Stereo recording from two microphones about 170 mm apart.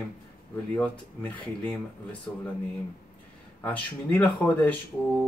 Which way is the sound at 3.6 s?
10° left (ahead or behind).